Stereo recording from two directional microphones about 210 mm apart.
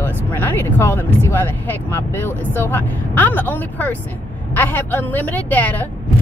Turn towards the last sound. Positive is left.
turn(degrees=5)  # may be behind; listen again after turning